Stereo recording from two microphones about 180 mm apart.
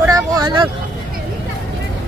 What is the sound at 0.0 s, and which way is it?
Vehicle, 20° right (ahead or behind).